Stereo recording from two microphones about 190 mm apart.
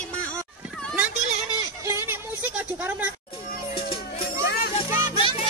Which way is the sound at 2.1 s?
10° right (ahead or behind).